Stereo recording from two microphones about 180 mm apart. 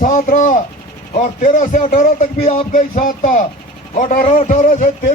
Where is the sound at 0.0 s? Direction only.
50° left (ahead or behind).